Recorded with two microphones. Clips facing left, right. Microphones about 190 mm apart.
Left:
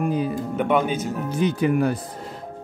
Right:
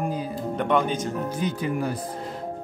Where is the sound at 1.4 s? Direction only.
65° left (ahead or behind).